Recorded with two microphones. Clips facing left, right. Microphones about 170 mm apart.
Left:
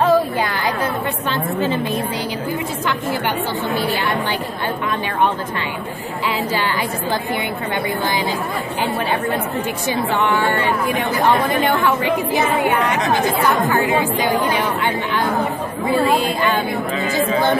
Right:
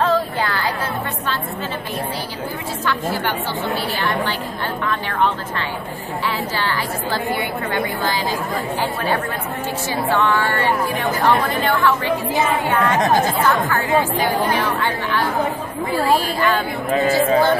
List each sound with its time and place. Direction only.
0.0 s a sound: 15° left (ahead or behind)
6.5 s speech: 15° left (ahead or behind)
10.1 s speech: 15° left (ahead or behind)
15.9 s speech: 20° left (ahead or behind)